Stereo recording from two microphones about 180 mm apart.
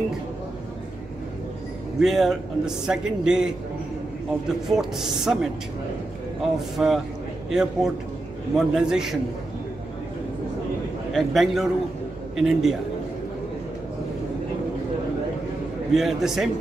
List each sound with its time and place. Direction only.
2.0 s a man's voice: centre (ahead or behind)
4.6 s a man's voice: centre (ahead or behind)
11.1 s a man's voice: centre (ahead or behind)
15.9 s a man's voice: centre (ahead or behind)